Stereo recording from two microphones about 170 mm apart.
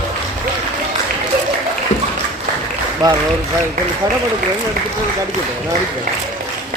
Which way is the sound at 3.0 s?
25° right (ahead or behind).